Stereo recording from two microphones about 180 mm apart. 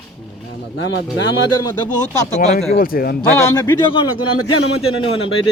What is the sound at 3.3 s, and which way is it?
Speech, 15° left (ahead or behind).